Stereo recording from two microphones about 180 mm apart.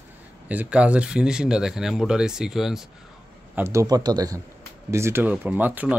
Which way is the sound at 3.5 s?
15° right (ahead or behind).